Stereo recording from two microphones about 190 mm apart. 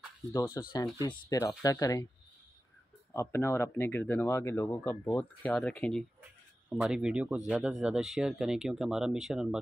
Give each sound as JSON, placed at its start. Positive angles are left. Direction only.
{"t": 0.3, "sound": "speech", "side_deg": 20}
{"t": 3.1, "sound": "speech", "side_deg": 15}